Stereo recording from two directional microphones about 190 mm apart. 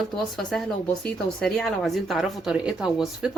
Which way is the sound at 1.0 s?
5° left (ahead or behind).